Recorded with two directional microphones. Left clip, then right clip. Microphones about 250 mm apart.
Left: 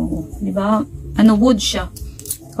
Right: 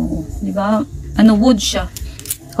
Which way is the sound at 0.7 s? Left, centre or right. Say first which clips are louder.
Right 1 dB; centre.